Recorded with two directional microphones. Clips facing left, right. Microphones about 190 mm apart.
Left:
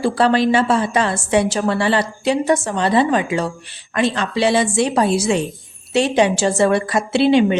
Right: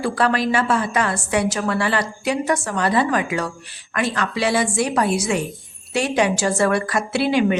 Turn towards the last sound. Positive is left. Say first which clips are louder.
# left 4 dB
turn(degrees=25)  # may be behind; listen again after turning